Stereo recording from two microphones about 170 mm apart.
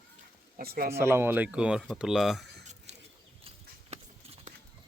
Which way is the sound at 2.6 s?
45° right (ahead or behind).